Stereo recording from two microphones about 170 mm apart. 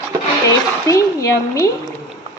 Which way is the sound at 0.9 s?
20° left (ahead or behind).